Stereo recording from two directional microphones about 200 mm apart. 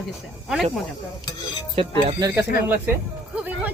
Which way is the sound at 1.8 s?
30° right (ahead or behind).